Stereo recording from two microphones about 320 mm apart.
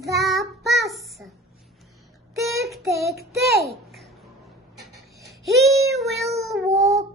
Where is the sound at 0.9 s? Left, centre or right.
Centre.